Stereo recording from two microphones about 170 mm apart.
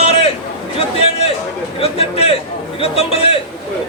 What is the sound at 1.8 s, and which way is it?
A man's voice, 35° left (ahead or behind).